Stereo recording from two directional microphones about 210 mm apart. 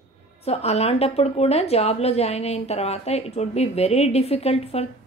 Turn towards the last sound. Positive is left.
turn(degrees=30)  # may be behind; listen again after turning